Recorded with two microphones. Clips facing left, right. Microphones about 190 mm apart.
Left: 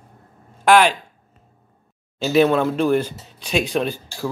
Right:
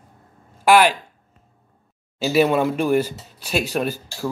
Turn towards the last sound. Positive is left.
turn(degrees=-5)  # may be behind; listen again after turning